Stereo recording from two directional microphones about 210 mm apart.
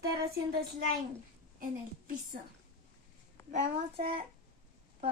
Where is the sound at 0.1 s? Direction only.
45° right (ahead or behind).